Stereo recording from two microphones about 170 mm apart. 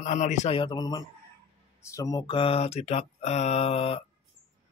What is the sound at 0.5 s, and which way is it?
Speech, 25° left (ahead or behind).